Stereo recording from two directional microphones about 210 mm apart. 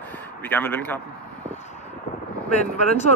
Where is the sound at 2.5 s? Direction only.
35° left (ahead or behind).